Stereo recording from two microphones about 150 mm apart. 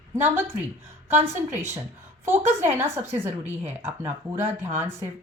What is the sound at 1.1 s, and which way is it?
A woman's voice, 15° right (ahead or behind).